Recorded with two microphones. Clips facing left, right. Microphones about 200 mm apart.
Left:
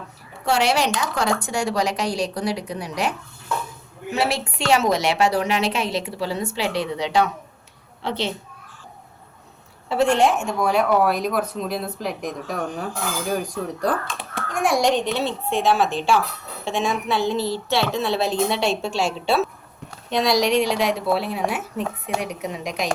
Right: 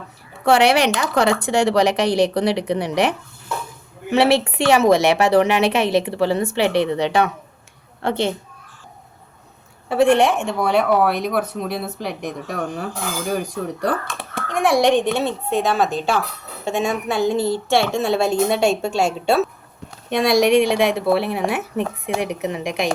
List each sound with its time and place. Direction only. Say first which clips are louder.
0.4 s a woman's voice: right 5 dB; 60° right (ahead or behind)
4.5 s a woman's voice: right 2 dB; 55° right (ahead or behind)
9.9 s a woman's voice: right 3 dB; 55° right (ahead or behind)